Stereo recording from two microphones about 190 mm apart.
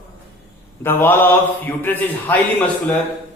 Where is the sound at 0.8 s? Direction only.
10° left (ahead or behind).